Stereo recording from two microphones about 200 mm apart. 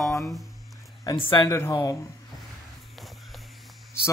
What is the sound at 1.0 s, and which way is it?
Speech, 25° left (ahead or behind).